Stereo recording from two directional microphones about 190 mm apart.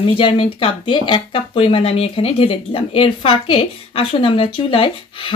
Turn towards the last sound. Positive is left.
turn(degrees=30)  # may be behind; listen again after turning